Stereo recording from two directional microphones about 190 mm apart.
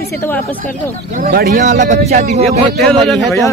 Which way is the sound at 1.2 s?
50° right (ahead or behind).